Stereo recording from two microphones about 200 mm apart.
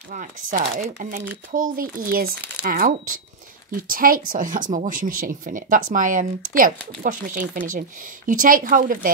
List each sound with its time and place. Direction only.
0.1 s speech: 40° right (ahead or behind)